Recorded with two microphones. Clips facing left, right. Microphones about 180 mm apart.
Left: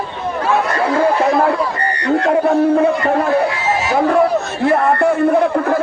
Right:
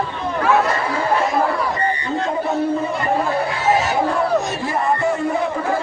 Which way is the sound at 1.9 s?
75° left (ahead or behind).